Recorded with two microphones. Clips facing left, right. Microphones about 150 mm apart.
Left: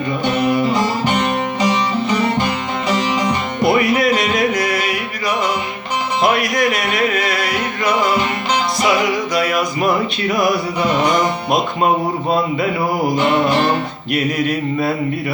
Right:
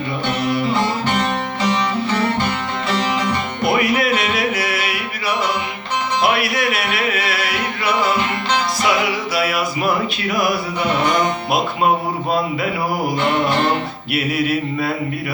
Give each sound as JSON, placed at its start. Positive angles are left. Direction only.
{"t": 0.4, "sound": "music", "side_deg": 15}
{"t": 3.7, "sound": "music", "side_deg": 0}
{"t": 6.4, "sound": "music", "side_deg": -5}
{"t": 9.3, "sound": "music", "side_deg": -5}
{"t": 14.1, "sound": "a sound", "side_deg": -5}